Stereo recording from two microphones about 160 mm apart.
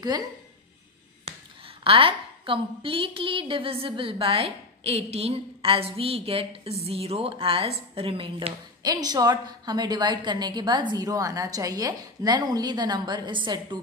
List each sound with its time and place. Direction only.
1.9 s a woman's voice: 35° right (ahead or behind)